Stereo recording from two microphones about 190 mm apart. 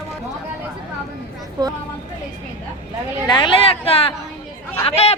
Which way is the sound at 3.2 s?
25° left (ahead or behind).